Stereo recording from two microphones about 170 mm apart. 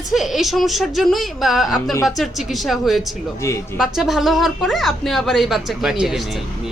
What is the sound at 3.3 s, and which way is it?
Speech, 15° left (ahead or behind).